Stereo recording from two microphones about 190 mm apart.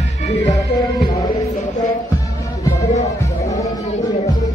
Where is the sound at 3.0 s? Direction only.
15° left (ahead or behind).